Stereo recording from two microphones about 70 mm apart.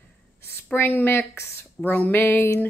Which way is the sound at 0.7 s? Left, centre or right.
Left.